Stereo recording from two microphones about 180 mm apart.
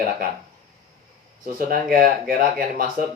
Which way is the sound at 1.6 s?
55° right (ahead or behind).